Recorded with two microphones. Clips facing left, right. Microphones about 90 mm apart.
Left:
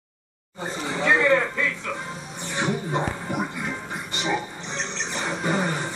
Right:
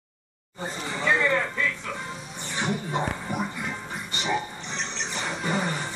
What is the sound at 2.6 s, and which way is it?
Speech, 10° left (ahead or behind).